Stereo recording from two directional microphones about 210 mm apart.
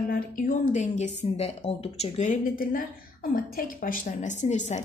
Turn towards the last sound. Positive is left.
turn(degrees=35)  # may be behind; listen again after turning